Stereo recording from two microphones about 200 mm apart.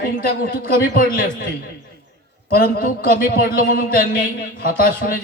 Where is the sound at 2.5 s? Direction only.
45° left (ahead or behind).